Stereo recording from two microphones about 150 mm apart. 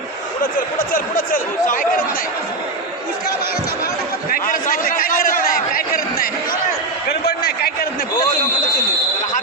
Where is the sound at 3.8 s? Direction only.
75° left (ahead or behind).